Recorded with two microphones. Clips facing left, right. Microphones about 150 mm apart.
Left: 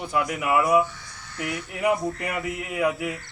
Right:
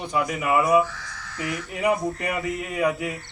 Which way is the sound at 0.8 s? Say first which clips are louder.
Right 3 dB; 90° right.